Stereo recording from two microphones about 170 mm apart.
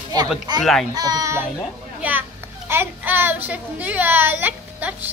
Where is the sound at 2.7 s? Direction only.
10° right (ahead or behind).